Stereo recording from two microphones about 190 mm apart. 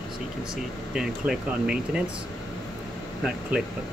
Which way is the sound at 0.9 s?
5° right (ahead or behind).